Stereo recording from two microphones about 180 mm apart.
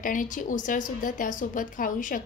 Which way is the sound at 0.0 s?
45° left (ahead or behind).